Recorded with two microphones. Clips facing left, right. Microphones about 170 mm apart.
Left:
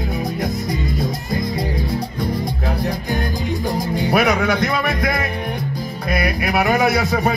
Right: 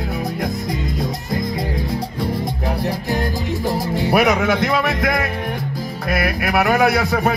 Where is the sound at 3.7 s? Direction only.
5° right (ahead or behind).